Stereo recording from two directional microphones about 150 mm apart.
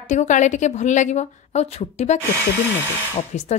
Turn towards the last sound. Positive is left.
turn(degrees=55)  # may be behind; listen again after turning